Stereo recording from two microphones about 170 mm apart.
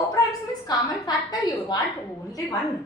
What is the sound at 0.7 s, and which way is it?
A woman's voice, 25° left (ahead or behind).